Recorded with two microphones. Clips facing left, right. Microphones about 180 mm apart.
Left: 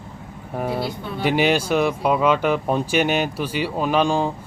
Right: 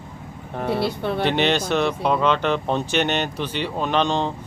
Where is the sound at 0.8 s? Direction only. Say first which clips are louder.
Right 4 dB; 75° right (ahead or behind).